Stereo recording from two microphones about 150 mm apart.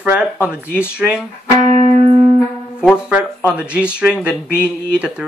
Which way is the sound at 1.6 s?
45° right (ahead or behind).